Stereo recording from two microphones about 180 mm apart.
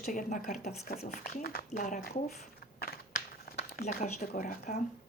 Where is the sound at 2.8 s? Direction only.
55° left (ahead or behind).